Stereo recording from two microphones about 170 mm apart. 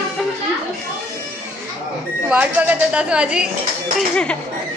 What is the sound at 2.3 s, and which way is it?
Speech, 10° right (ahead or behind).